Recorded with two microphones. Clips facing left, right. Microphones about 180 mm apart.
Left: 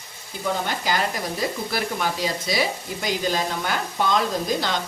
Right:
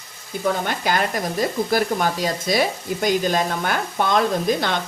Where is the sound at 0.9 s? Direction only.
55° right (ahead or behind).